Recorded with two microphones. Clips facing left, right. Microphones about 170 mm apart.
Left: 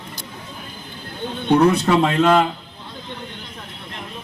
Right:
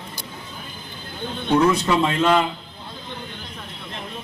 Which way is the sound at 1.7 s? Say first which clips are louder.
Left 3 dB; 65° left (ahead or behind).